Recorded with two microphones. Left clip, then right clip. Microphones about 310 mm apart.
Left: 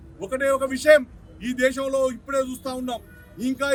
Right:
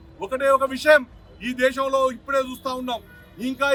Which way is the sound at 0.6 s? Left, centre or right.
Right.